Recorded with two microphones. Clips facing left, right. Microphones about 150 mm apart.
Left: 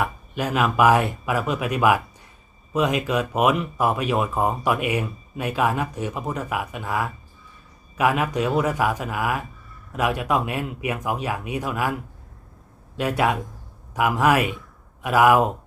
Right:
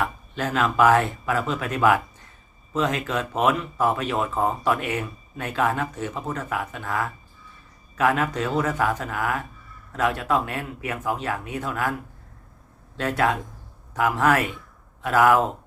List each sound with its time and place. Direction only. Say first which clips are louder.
0.0 s speech: left 1 dB; 15° left (ahead or behind)
13.0 s speech: left 1 dB; 15° left (ahead or behind)